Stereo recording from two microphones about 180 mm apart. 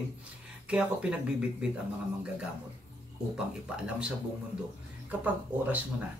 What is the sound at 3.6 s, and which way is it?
Speech, 5° right (ahead or behind).